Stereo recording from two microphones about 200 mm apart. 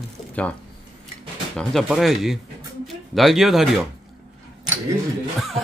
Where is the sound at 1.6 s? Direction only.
Centre (ahead or behind).